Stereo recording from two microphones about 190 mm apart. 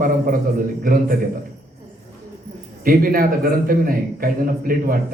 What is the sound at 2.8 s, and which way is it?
A man's voice, 50° right (ahead or behind).